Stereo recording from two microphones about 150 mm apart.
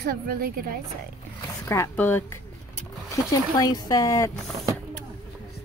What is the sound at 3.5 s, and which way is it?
Speech, 25° left (ahead or behind).